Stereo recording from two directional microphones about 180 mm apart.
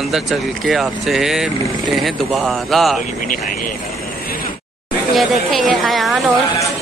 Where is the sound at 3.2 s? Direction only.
50° left (ahead or behind).